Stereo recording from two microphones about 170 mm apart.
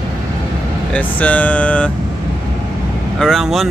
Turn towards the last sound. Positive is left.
turn(degrees=0)  # may be behind; listen again after turning